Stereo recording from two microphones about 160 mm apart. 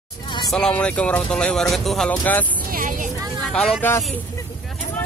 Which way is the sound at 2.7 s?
55° right (ahead or behind).